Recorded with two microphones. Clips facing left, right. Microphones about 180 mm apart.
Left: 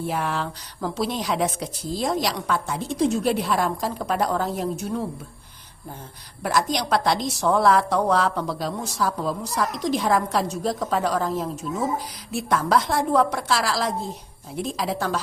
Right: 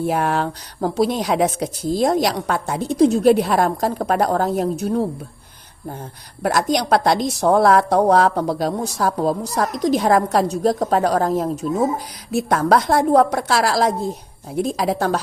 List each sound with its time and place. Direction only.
0.1 s a woman's voice: 55° right (ahead or behind)
3.0 s a woman's voice: 40° right (ahead or behind)
6.4 s a woman's voice: 45° right (ahead or behind)
10.5 s a woman's voice: 40° right (ahead or behind)